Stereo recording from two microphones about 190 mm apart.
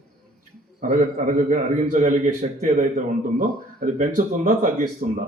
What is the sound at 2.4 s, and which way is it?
A man's voice, 40° right (ahead or behind).